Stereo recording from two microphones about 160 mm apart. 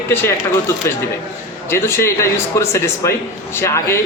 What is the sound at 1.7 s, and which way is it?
Speech, 15° left (ahead or behind).